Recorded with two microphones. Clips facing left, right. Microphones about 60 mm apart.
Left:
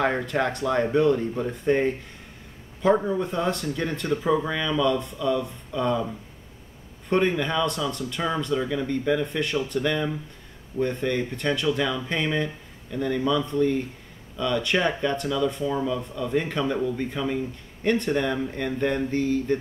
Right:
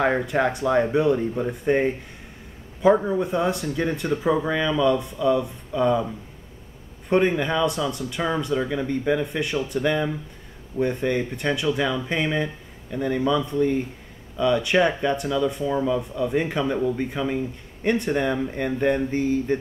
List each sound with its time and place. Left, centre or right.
0.0 s speech: centre
7.1 s speech: centre